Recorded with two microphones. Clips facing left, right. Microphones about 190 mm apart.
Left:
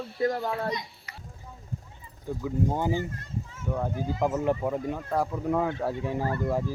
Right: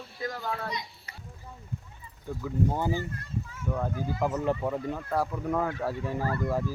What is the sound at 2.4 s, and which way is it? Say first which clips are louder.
Speech: left 1 dB; 15° left (ahead or behind).